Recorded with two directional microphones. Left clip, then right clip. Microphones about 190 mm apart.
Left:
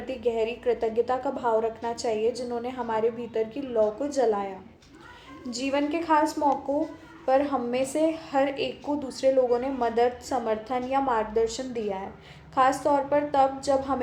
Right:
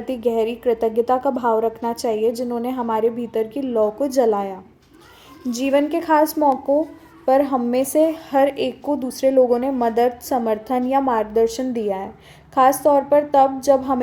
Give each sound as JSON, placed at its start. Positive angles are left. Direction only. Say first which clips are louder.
{"t": 0.1, "sound": "a woman's voice", "louder": "right 7 dB", "side_deg": -45}
{"t": 5.5, "sound": "a woman's voice", "louder": "right 8 dB", "side_deg": -45}